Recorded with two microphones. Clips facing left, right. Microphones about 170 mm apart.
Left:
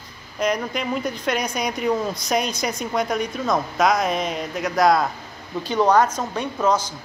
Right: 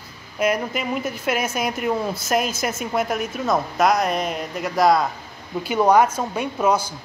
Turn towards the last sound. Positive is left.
turn(degrees=-10)  # may be behind; listen again after turning